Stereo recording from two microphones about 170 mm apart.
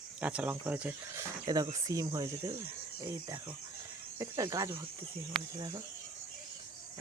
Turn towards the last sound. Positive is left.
turn(degrees=-25)  # may be behind; listen again after turning